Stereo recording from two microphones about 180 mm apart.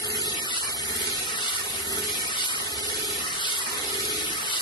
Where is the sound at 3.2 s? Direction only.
25° left (ahead or behind).